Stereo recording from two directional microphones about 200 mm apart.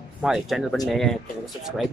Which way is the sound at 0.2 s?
Centre (ahead or behind).